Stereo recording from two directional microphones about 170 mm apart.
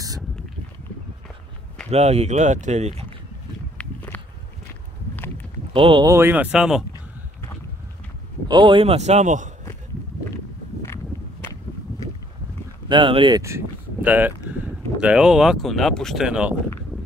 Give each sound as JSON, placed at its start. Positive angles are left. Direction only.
{"t": 1.9, "sound": "speech", "side_deg": -40}
{"t": 3.7, "sound": "walk", "side_deg": 10}
{"t": 5.7, "sound": "speech", "side_deg": -30}
{"t": 6.0, "sound": "speech", "side_deg": -15}
{"t": 8.5, "sound": "speech", "side_deg": -30}
{"t": 12.8, "sound": "speech", "side_deg": -30}
{"t": 13.4, "sound": "speech", "side_deg": -15}